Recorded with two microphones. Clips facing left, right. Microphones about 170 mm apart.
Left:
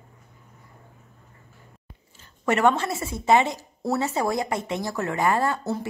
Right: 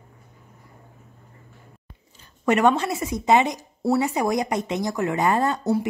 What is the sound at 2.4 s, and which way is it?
Speech, 15° right (ahead or behind).